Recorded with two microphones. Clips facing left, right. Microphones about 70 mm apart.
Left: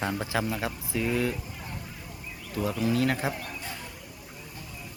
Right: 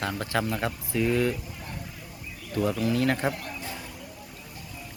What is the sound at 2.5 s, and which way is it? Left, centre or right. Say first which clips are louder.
Speech: right 2 dB; centre.